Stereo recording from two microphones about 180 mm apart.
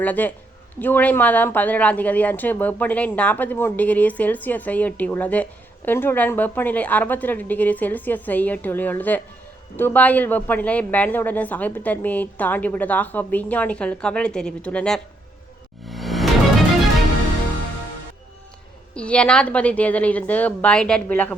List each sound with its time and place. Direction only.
0.0 s speech: 10° left (ahead or behind)
15.9 s music: centre (ahead or behind)
18.9 s speech: 5° left (ahead or behind)